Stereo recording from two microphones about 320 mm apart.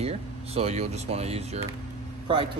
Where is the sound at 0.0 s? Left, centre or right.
Centre.